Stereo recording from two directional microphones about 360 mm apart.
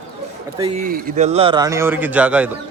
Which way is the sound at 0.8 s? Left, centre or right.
Right.